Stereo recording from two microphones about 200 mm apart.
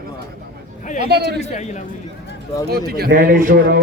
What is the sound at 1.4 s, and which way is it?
Speech, 35° left (ahead or behind).